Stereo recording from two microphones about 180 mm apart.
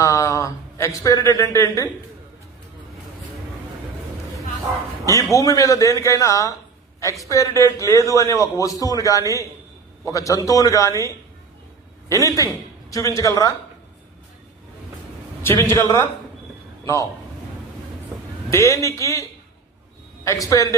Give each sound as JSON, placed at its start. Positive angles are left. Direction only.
{"t": 0.0, "sound": "a man's voice", "side_deg": 15}
{"t": 5.3, "sound": "a man's voice", "side_deg": 20}
{"t": 12.0, "sound": "a man's voice", "side_deg": 20}
{"t": 15.4, "sound": "a man's voice", "side_deg": 15}
{"t": 16.8, "sound": "a man's voice", "side_deg": 20}
{"t": 18.5, "sound": "a man's voice", "side_deg": 15}
{"t": 20.2, "sound": "a man's voice", "side_deg": 20}